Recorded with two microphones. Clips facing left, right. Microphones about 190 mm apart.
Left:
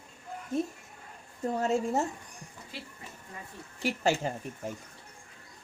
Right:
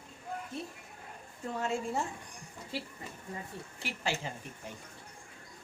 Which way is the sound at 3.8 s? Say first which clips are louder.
Left 9 dB; 45° left (ahead or behind).